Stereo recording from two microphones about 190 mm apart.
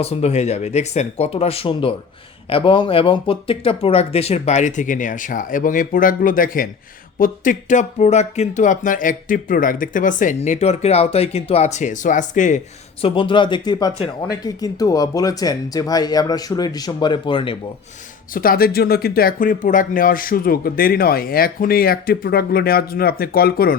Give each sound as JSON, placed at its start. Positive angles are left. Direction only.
{"t": 0.0, "sound": "speech", "side_deg": 35}
{"t": 13.0, "sound": "speech", "side_deg": 30}
{"t": 18.3, "sound": "speech", "side_deg": 50}